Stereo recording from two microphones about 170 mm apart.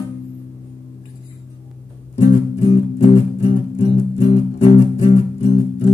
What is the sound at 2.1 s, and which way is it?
Music, 35° left (ahead or behind).